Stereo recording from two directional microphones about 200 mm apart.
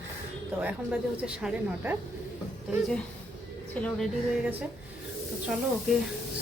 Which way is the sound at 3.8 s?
Centre (ahead or behind).